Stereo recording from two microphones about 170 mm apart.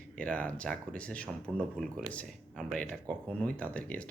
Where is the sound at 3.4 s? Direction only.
10° left (ahead or behind).